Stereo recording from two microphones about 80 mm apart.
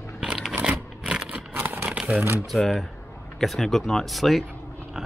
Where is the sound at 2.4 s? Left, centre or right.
Centre.